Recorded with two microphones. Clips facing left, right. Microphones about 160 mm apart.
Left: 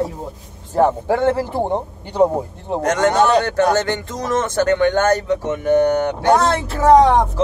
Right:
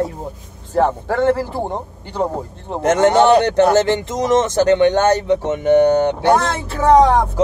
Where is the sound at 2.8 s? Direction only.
25° right (ahead or behind).